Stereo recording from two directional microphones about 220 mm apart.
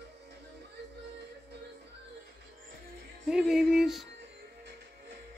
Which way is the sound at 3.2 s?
Centre (ahead or behind).